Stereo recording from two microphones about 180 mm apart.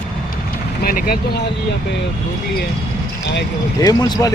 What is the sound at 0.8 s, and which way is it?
Speech, 55° left (ahead or behind).